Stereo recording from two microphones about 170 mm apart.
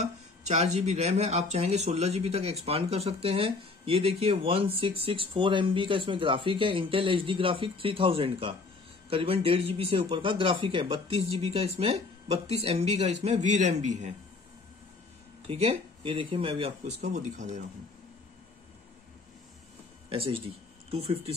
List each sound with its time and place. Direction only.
0.0 s speech: 40° right (ahead or behind)
15.4 s speech: 35° right (ahead or behind)
20.1 s speech: 35° right (ahead or behind)